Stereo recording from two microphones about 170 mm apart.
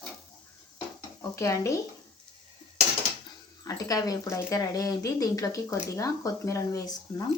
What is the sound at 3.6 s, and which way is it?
Speech, 20° left (ahead or behind).